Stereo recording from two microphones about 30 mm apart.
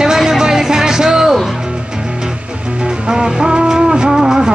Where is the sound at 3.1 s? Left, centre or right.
Centre.